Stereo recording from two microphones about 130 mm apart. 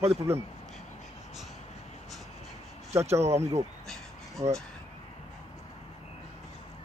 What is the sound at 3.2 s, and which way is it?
Speech, 55° right (ahead or behind).